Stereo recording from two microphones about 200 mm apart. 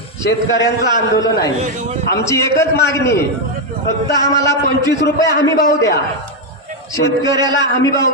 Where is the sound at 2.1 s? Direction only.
15° left (ahead or behind).